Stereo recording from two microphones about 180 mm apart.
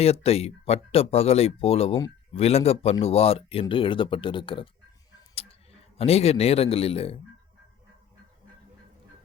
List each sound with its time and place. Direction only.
0.0 s speech: 35° left (ahead or behind)
5.3 s tick-tock: 30° left (ahead or behind)
6.0 s speech: 35° left (ahead or behind)